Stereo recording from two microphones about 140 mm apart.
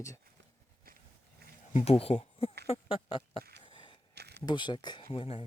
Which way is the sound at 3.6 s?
35° left (ahead or behind).